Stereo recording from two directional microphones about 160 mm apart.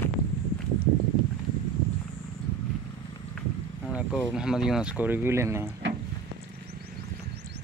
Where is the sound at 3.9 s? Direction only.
5° right (ahead or behind).